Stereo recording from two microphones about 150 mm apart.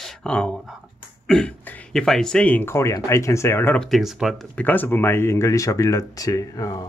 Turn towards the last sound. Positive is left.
turn(degrees=25)  # may be behind; listen again after turning